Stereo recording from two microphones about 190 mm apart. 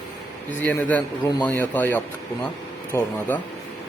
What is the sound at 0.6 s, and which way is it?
Speech, 10° left (ahead or behind).